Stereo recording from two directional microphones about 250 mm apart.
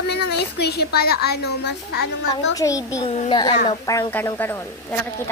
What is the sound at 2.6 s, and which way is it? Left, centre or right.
A woman's voice, centre.